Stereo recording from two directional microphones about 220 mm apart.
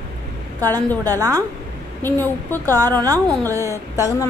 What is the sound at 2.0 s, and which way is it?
A woman's voice, 10° left (ahead or behind).